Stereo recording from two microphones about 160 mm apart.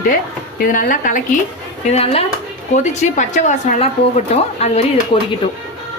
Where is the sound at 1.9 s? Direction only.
40° left (ahead or behind).